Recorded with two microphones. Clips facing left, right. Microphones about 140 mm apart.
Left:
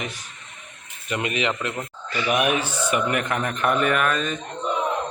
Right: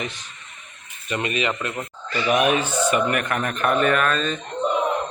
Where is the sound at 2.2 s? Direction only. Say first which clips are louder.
Right 3 dB; 30° right (ahead or behind).